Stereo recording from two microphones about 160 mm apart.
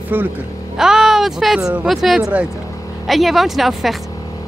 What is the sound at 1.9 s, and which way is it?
Speech, centre (ahead or behind).